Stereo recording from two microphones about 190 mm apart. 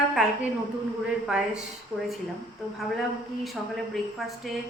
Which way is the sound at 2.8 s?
Centre (ahead or behind).